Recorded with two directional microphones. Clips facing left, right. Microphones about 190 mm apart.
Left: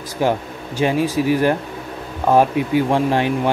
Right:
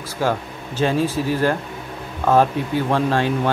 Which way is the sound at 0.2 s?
15° left (ahead or behind).